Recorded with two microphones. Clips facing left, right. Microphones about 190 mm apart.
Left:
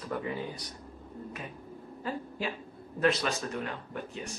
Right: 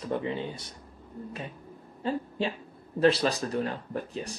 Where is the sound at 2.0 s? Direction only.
30° right (ahead or behind).